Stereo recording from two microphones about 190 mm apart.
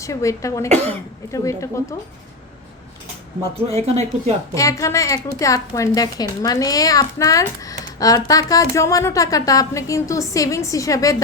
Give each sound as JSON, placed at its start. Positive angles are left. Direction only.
{"t": 0.0, "sound": "a woman's voice", "side_deg": 15}
{"t": 3.8, "sound": "speech", "side_deg": -35}
{"t": 4.5, "sound": "a woman's voice", "side_deg": 15}